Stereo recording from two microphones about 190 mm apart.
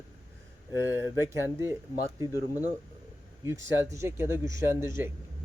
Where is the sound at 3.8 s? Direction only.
15° right (ahead or behind).